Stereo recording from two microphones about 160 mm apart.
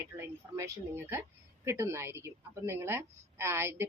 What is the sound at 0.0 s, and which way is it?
A woman's voice, 20° right (ahead or behind).